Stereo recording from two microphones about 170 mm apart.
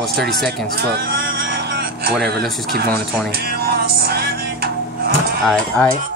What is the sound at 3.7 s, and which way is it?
Music, 65° right (ahead or behind).